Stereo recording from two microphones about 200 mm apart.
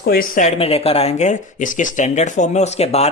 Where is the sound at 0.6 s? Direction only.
30° left (ahead or behind).